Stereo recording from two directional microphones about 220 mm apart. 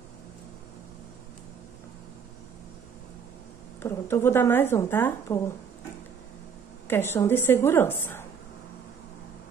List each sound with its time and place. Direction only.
3.8 s speech: 10° left (ahead or behind)
6.9 s speech: 10° left (ahead or behind)